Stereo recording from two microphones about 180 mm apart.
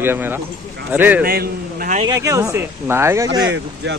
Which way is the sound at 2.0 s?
20° right (ahead or behind).